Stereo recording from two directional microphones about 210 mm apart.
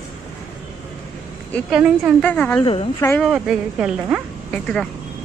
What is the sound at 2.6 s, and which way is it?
Speech, 25° left (ahead or behind).